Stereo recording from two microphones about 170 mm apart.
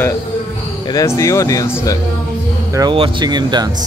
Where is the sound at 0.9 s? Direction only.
20° left (ahead or behind).